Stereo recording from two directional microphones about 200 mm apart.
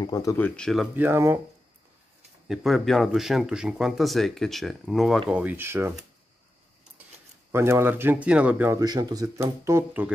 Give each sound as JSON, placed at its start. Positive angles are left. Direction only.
{"t": 0.0, "sound": "speech", "side_deg": 20}
{"t": 0.6, "sound": "speech", "side_deg": 0}
{"t": 0.9, "sound": "speech", "side_deg": -10}
{"t": 2.4, "sound": "speech", "side_deg": 0}
{"t": 7.0, "sound": "a sound", "side_deg": -10}
{"t": 7.5, "sound": "speech", "side_deg": -15}